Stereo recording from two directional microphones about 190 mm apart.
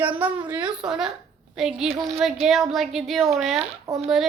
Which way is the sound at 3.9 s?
15° right (ahead or behind).